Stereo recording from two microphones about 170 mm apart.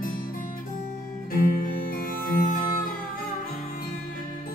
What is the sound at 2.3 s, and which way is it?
Music, 60° left (ahead or behind).